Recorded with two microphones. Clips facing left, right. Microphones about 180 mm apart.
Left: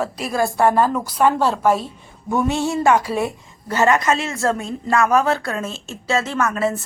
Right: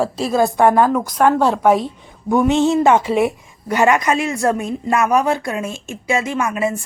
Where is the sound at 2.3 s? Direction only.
15° right (ahead or behind).